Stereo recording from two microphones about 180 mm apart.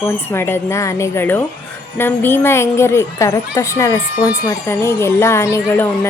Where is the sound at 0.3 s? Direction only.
15° left (ahead or behind).